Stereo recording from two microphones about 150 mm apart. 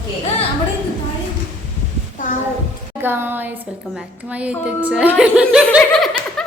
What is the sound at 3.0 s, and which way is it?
A woman's voice, 15° right (ahead or behind).